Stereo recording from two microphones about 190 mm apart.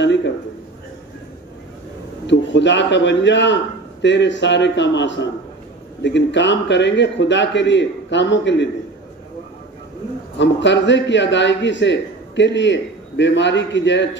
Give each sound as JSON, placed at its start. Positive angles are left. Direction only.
{"t": 0.0, "sound": "a man's voice", "side_deg": 65}
{"t": 2.2, "sound": "a man's voice", "side_deg": 70}
{"t": 10.4, "sound": "a man's voice", "side_deg": 70}